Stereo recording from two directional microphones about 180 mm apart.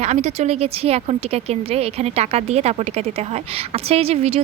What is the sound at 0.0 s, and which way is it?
A woman's voice, 40° right (ahead or behind).